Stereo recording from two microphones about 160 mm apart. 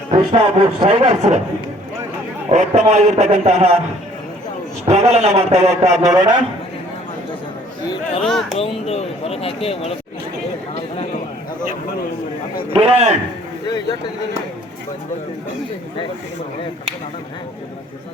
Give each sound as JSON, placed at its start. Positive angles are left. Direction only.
{"t": 0.3, "sound": "speech", "side_deg": -30}
{"t": 0.9, "sound": "a man's voice", "side_deg": -45}
{"t": 2.5, "sound": "a man's voice", "side_deg": -45}
{"t": 4.9, "sound": "a man's voice", "side_deg": -45}
{"t": 8.2, "sound": "speech", "side_deg": 0}
{"t": 8.9, "sound": "speech", "side_deg": 40}
{"t": 12.7, "sound": "speech", "side_deg": -40}